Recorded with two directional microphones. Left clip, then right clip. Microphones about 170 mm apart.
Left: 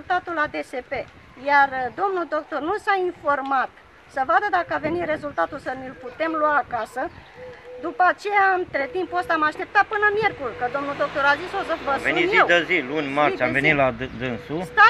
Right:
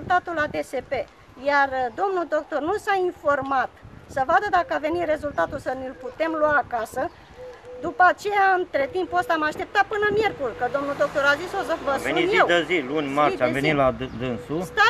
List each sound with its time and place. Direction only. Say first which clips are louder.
0.1 s a woman's voice: right 1 dB; 20° right (ahead or behind)
12.1 s speech: left 2 dB; 10° left (ahead or behind)